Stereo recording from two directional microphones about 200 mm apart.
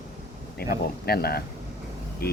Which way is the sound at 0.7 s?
50° left (ahead or behind).